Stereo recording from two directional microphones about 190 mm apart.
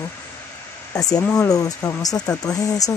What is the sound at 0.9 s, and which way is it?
Speech, 20° left (ahead or behind).